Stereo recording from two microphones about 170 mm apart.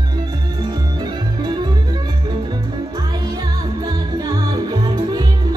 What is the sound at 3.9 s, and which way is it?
Music, 20° right (ahead or behind).